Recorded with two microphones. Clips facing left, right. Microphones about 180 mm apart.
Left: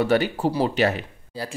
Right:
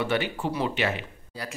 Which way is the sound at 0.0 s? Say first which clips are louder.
Left 6 dB; 40° left (ahead or behind).